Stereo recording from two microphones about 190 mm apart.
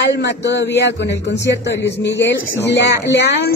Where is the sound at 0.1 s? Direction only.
65° left (ahead or behind).